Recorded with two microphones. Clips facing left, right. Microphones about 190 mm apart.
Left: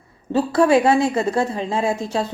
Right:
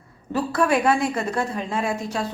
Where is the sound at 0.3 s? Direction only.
30° left (ahead or behind).